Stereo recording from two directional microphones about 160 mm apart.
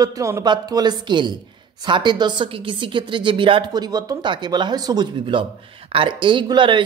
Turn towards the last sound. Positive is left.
turn(degrees=-30)  # may be behind; listen again after turning